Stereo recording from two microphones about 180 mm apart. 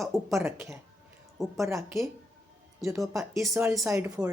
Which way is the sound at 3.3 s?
15° right (ahead or behind).